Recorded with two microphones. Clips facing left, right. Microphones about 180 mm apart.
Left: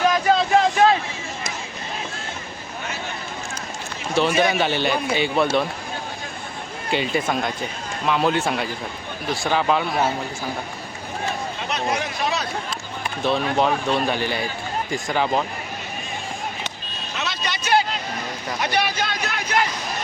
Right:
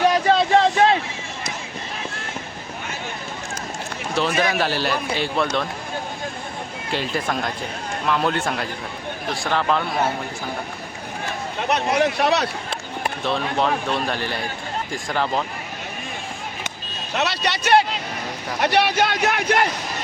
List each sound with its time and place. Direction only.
0.0 s a sound: 30° right (ahead or behind)
4.1 s speech: centre (ahead or behind)
6.9 s speech: centre (ahead or behind)
11.7 s speech: 65° right (ahead or behind)
13.2 s speech: centre (ahead or behind)
17.2 s vehicle: 70° right (ahead or behind)
18.6 s speech: 65° right (ahead or behind)